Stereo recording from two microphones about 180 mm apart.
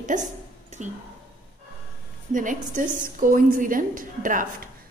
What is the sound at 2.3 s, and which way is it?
A woman's voice, 45° right (ahead or behind).